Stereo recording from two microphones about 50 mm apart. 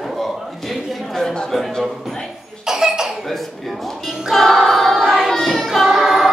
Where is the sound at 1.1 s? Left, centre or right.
Centre.